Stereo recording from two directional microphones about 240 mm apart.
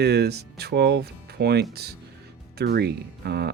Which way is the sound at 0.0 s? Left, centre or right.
Right.